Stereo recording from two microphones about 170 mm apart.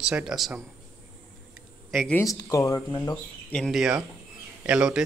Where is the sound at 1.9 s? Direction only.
5° left (ahead or behind).